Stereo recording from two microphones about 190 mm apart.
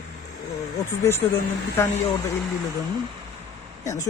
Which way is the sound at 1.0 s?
15° left (ahead or behind).